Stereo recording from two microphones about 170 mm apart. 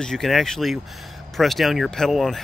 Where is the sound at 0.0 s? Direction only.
Centre (ahead or behind).